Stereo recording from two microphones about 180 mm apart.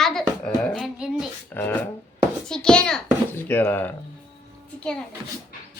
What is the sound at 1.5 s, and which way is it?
Speech, 10° left (ahead or behind).